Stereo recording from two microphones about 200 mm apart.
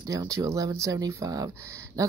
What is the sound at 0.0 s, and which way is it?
Speech, 15° right (ahead or behind).